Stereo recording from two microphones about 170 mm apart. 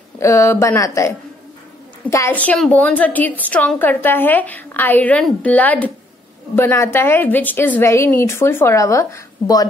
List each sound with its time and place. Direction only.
0.2 s a woman's voice: 15° left (ahead or behind)